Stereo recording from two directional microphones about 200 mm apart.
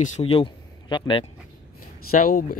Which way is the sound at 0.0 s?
35° left (ahead or behind).